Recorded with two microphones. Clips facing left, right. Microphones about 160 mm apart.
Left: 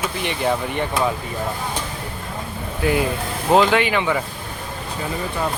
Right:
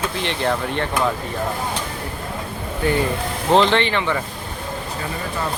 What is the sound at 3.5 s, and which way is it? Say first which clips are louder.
Speech: even; 5° left (ahead or behind).